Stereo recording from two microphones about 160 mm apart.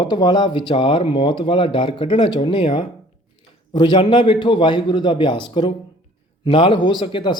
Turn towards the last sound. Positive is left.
turn(degrees=30)  # may be behind; listen again after turning